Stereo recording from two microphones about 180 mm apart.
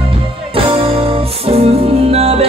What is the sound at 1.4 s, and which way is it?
Music, 35° right (ahead or behind).